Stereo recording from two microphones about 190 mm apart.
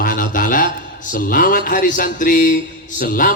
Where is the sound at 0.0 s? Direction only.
45° left (ahead or behind).